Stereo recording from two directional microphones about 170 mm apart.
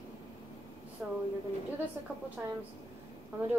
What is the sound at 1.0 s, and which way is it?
Speech, 10° right (ahead or behind).